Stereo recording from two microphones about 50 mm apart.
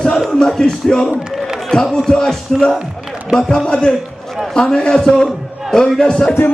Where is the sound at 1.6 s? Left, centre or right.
Centre.